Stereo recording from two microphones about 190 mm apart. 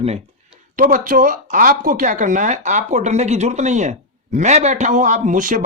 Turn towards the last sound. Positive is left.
turn(degrees=-45)  # may be behind; listen again after turning